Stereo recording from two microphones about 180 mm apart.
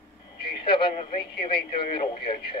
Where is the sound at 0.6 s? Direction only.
30° left (ahead or behind).